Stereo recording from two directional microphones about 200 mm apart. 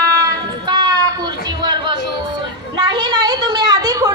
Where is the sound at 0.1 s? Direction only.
20° right (ahead or behind).